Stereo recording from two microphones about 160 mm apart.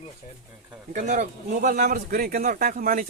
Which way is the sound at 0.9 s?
50° right (ahead or behind).